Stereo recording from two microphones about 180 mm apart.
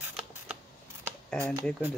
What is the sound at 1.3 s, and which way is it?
Speech, 15° right (ahead or behind).